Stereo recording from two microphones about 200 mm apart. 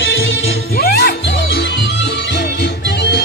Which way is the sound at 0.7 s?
50° left (ahead or behind).